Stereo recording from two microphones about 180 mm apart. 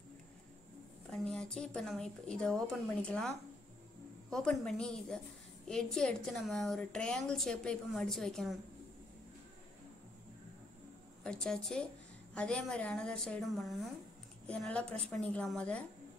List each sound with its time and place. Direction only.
1.1 s a woman's voice: 5° left (ahead or behind)
4.3 s a woman's voice: 5° left (ahead or behind)
11.2 s a woman's voice: 5° left (ahead or behind)